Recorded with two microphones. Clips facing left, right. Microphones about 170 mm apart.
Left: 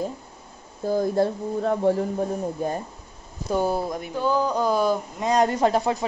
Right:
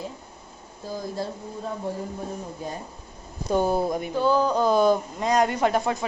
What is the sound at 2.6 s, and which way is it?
Speech, 55° left (ahead or behind).